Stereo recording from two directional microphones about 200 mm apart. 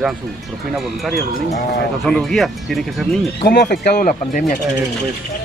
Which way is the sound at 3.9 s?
40° left (ahead or behind).